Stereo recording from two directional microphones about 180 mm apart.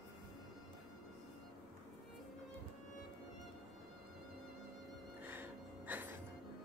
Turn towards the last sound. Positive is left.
turn(degrees=-10)  # may be behind; listen again after turning